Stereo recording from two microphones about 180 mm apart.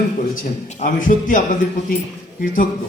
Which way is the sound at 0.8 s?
50° left (ahead or behind).